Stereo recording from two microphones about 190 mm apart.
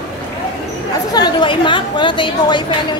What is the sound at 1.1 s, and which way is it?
Speech, 25° left (ahead or behind).